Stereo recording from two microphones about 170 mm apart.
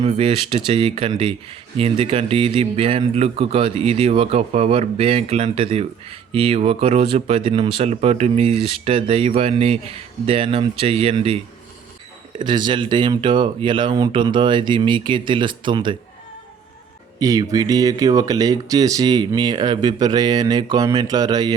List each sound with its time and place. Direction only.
0.1 s speech: 30° right (ahead or behind)
12.4 s speech: 25° right (ahead or behind)
17.2 s speech: 20° right (ahead or behind)